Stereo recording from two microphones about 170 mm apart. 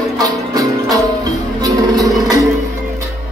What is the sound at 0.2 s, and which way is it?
Music, 20° right (ahead or behind).